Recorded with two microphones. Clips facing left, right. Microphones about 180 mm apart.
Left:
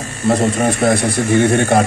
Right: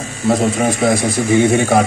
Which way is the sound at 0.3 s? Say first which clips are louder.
Even; 5° right (ahead or behind).